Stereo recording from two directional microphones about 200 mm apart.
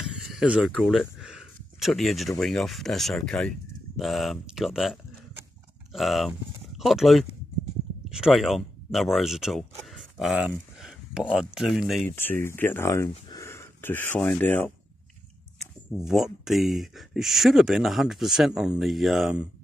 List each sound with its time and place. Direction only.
0.2 s speech: 5° right (ahead or behind)
5.9 s speech: centre (ahead or behind)
9.8 s a sound: centre (ahead or behind)
10.8 s speech: centre (ahead or behind)
12.2 s speech: 10° left (ahead or behind)
15.6 s speech: centre (ahead or behind)